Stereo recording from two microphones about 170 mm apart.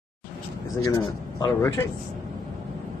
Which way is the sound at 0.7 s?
20° left (ahead or behind).